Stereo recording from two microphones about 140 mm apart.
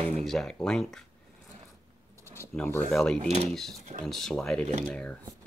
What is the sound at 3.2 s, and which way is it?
Speech, 50° right (ahead or behind).